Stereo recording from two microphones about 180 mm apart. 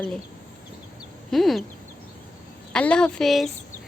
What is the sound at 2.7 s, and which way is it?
Speech, 5° left (ahead or behind).